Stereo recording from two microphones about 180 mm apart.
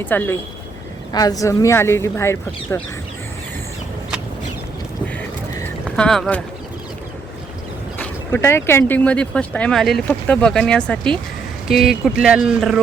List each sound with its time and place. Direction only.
0.0 s speech: 10° left (ahead or behind)
5.1 s a sound: 5° left (ahead or behind)
7.9 s speech: 10° left (ahead or behind)